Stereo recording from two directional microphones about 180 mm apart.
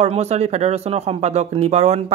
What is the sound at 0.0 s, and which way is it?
Speech, 35° right (ahead or behind).